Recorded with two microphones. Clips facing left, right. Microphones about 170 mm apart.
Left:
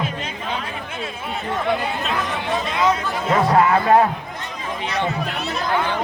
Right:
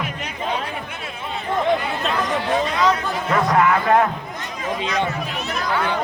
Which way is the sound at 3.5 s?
30° left (ahead or behind).